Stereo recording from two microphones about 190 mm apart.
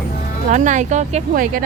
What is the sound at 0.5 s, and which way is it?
Speech, 40° right (ahead or behind).